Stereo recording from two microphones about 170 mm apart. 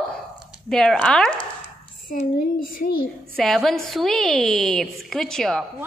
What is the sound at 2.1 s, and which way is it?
Speech, 55° left (ahead or behind).